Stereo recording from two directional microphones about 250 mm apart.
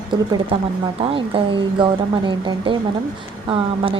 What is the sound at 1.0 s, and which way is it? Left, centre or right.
Speech, right.